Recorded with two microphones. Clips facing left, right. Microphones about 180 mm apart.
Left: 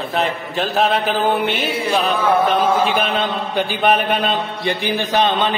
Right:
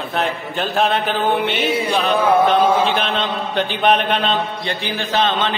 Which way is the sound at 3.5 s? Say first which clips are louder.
Even; 10° left (ahead or behind).